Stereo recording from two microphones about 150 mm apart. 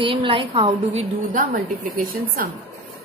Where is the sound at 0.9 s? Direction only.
50° right (ahead or behind).